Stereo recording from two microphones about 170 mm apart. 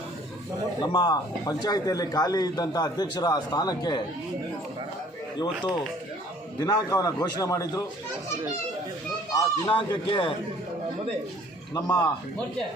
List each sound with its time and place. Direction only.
0.8 s speech: 25° left (ahead or behind)
6.6 s speech: 25° left (ahead or behind)
9.3 s speech: 30° left (ahead or behind)
11.7 s speech: 25° left (ahead or behind)